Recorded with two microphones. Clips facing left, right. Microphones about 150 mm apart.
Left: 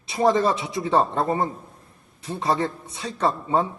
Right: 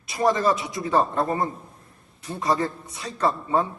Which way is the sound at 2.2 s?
25° left (ahead or behind).